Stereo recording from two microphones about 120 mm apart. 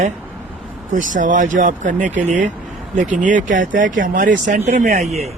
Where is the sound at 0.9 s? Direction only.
90° right; by 5.1 s 75° right (ahead or behind).